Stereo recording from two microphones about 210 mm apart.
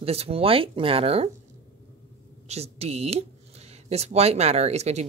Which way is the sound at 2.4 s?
30° right (ahead or behind).